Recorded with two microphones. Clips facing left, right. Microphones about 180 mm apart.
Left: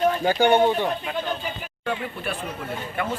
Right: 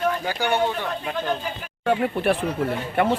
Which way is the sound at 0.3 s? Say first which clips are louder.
Left 5 dB; 25° left (ahead or behind).